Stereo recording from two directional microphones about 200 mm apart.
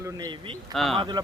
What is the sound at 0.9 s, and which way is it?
Speech, 20° right (ahead or behind).